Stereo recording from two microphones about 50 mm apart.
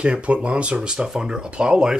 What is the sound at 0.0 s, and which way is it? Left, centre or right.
Speech, right.